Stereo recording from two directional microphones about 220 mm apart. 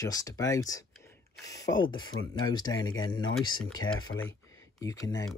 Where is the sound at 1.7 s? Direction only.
65° left (ahead or behind).